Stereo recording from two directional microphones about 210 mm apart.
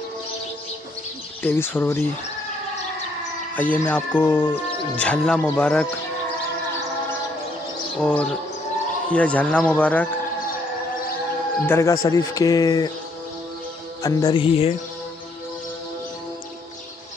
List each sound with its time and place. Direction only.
1.4 s speech: 10° left (ahead or behind)
3.5 s speech: 5° left (ahead or behind)
8.0 s speech: 5° left (ahead or behind)
11.6 s speech: 10° left (ahead or behind)
14.0 s music: 20° left (ahead or behind)